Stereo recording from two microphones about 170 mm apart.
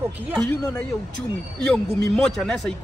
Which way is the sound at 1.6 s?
5° left (ahead or behind).